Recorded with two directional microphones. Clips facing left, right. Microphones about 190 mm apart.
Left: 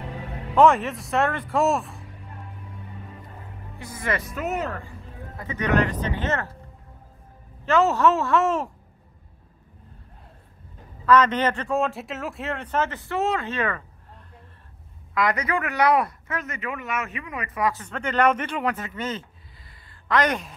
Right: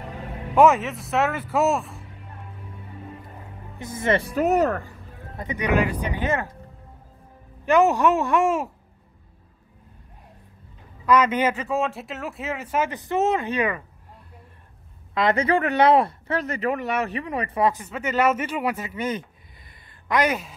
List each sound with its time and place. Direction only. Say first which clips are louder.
0.6 s speech: right 1 dB; 5° right (ahead or behind)
3.7 s speech: right 6 dB; 20° right (ahead or behind); by 4.9 s 40° right (ahead or behind)
5.4 s speech: even; 15° right (ahead or behind)
7.6 s speech: right 1 dB; 15° right (ahead or behind)
11.1 s speech: even; 10° right (ahead or behind)
15.1 s speech: right 4 dB; 25° right (ahead or behind)
17.7 s speech: even; 5° right (ahead or behind)